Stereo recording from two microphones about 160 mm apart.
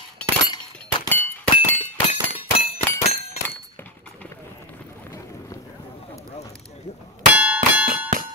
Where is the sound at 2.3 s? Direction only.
35° left (ahead or behind).